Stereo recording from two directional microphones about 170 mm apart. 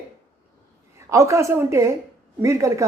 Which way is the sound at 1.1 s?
20° right (ahead or behind).